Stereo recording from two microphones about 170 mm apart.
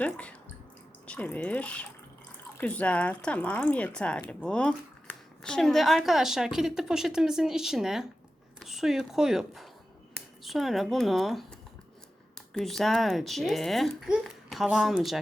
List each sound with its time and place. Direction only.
0.0 s speech: 10° left (ahead or behind)
12.5 s speech: centre (ahead or behind)